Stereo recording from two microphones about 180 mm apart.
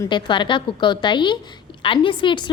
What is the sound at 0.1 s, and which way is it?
A woman's voice, 25° left (ahead or behind).